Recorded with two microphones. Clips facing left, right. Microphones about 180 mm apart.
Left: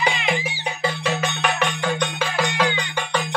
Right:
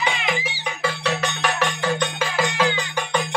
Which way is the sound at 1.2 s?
Centre (ahead or behind).